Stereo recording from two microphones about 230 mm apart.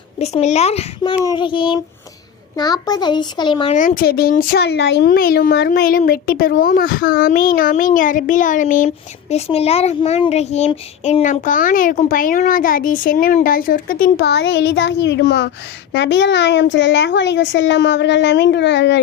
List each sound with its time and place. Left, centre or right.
0.2 s a child's voice: left
3.8 s speech: left